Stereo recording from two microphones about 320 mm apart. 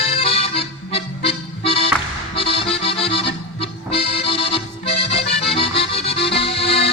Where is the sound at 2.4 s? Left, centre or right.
Centre.